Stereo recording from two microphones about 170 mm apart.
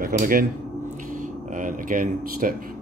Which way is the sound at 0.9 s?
50° right (ahead or behind).